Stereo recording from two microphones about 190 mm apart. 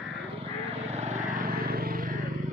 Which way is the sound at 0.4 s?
30° right (ahead or behind).